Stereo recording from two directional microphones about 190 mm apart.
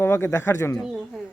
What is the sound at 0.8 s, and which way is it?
Speech, centre (ahead or behind).